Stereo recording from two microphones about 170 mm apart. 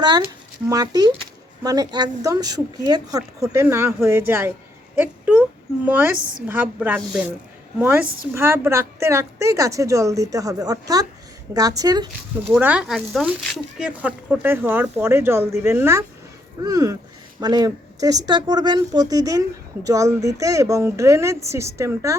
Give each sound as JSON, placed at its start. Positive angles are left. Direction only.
{"t": 0.7, "sound": "speech", "side_deg": -25}
{"t": 12.5, "sound": "speech", "side_deg": -10}